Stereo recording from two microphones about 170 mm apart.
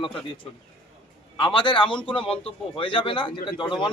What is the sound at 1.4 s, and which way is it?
A man's voice, 30° left (ahead or behind).